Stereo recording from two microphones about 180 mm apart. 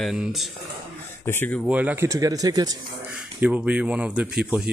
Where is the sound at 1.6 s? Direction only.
10° right (ahead or behind).